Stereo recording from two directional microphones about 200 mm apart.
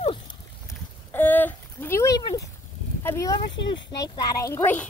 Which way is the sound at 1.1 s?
10° left (ahead or behind).